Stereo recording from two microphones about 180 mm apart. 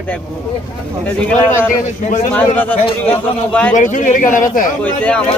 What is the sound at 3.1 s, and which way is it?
Speech, 10° left (ahead or behind).